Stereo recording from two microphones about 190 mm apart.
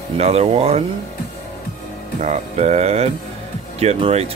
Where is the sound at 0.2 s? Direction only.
30° right (ahead or behind).